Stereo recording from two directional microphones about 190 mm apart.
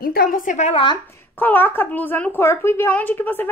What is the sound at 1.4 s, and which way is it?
A woman's voice, 10° left (ahead or behind).